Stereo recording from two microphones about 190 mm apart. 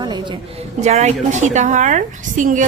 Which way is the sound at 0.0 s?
20° right (ahead or behind).